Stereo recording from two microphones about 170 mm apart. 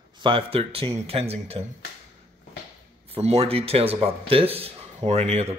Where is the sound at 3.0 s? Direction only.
35° right (ahead or behind).